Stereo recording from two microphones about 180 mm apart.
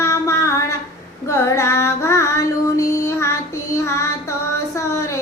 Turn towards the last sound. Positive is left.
turn(degrees=15)  # may be behind; listen again after turning